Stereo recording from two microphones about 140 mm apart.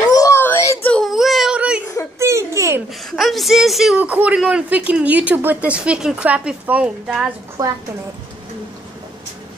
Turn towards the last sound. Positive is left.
turn(degrees=-25)  # may be behind; listen again after turning